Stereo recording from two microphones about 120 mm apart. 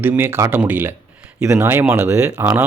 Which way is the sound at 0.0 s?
20° right (ahead or behind).